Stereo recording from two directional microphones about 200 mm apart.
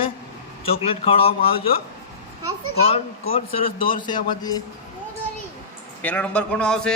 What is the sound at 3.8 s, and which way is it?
Speech, 45° left (ahead or behind).